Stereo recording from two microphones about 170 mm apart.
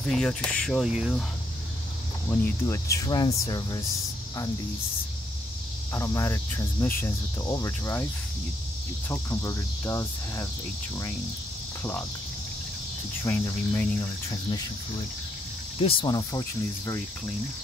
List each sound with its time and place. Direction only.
0.0 s speech: 5° left (ahead or behind)
2.2 s cricket: 15° left (ahead or behind)
3.4 s speech: 25° left (ahead or behind)
5.9 s cricket: 15° left (ahead or behind)
9.1 s cricket: 15° left (ahead or behind)
13.2 s cricket: 15° left (ahead or behind)
15.8 s speech: 30° left (ahead or behind)